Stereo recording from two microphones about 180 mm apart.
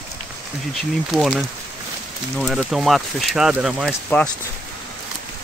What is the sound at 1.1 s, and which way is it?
Speech, centre (ahead or behind).